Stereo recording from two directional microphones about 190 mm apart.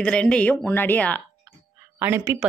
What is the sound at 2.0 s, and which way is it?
Speech, 10° right (ahead or behind).